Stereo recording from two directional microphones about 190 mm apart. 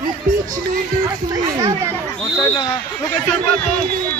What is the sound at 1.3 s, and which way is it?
Speech, 15° right (ahead or behind).